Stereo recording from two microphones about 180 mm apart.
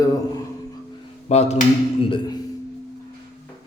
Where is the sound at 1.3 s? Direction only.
40° left (ahead or behind).